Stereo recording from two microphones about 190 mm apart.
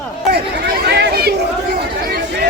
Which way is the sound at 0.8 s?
60° right (ahead or behind).